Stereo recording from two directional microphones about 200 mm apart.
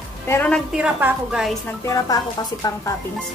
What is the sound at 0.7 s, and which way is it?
Speech, 5° right (ahead or behind).